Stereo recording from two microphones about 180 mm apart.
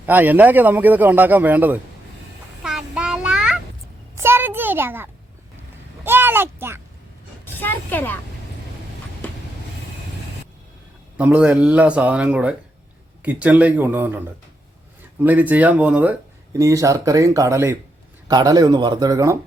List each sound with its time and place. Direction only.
0.0 s a man's voice: 10° right (ahead or behind)
2.6 s child singing: 5° right (ahead or behind)
4.2 s a sound: 10° right (ahead or behind)
6.1 s a sound: 10° right (ahead or behind)
7.4 s speech: 10° left (ahead or behind)
9.2 s vehicle: 10° left (ahead or behind)
11.2 s a man's voice: 10° right (ahead or behind)
15.2 s a man's voice: 10° right (ahead or behind)
16.5 s speech: 20° right (ahead or behind)